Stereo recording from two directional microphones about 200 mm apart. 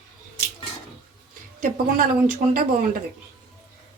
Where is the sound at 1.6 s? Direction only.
40° right (ahead or behind).